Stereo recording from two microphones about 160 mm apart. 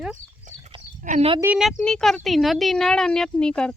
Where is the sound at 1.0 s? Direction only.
50° right (ahead or behind).